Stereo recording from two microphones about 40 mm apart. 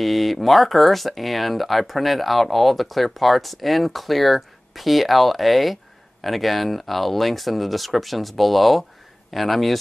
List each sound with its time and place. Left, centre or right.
0.0 s speech: centre